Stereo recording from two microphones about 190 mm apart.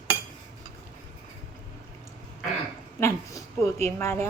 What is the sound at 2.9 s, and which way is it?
Speech, 15° left (ahead or behind).